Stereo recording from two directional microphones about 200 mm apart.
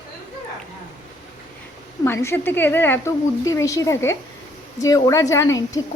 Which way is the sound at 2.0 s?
15° left (ahead or behind).